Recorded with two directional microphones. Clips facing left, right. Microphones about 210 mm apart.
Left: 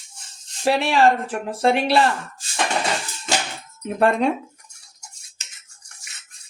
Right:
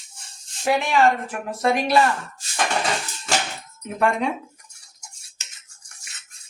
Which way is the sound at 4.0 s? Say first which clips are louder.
Left 4 dB; 35° left (ahead or behind).